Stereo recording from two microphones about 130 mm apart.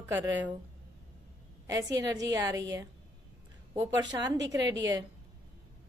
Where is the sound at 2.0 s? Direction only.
30° right (ahead or behind).